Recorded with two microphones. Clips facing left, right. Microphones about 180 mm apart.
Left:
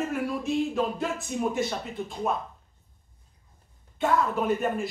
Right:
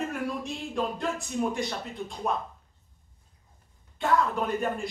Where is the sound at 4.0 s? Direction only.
Centre (ahead or behind).